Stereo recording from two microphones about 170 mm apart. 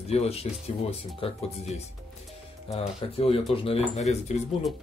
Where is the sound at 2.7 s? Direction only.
35° left (ahead or behind).